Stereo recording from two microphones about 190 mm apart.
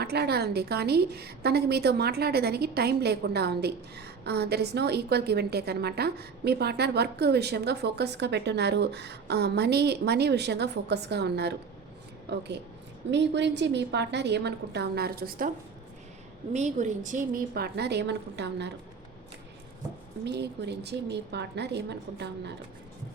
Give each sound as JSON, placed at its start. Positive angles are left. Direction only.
{"t": 0.0, "sound": "a woman's voice", "side_deg": -60}
{"t": 20.2, "sound": "a woman's voice", "side_deg": -60}